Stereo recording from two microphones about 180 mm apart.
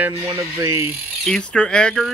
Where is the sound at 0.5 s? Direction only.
15° right (ahead or behind).